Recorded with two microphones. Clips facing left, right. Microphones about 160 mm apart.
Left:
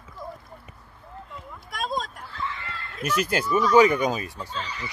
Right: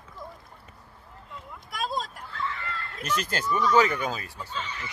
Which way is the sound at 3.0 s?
10° left (ahead or behind).